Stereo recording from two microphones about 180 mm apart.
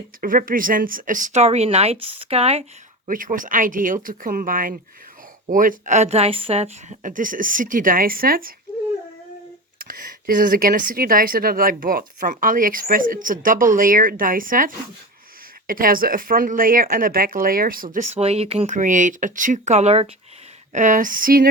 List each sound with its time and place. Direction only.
0.2 s speech: 50° right (ahead or behind); by 2.6 s 35° right (ahead or behind)
3.1 s speech: 50° right (ahead or behind)
9.7 s speech: 50° right (ahead or behind); by 20.1 s 35° right (ahead or behind)
20.7 s speech: 45° right (ahead or behind)